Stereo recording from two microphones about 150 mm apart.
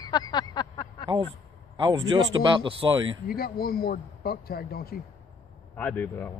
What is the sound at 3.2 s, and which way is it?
A man's voice, 90° left.